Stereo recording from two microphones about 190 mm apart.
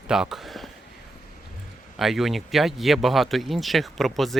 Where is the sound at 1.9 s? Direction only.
Centre (ahead or behind).